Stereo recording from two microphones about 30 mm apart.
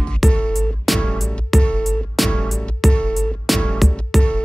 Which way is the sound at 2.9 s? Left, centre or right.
Left.